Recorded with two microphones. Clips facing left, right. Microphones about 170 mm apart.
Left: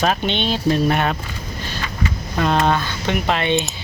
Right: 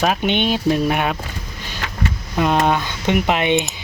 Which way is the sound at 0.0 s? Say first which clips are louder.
Right 2 dB; 10° right (ahead or behind).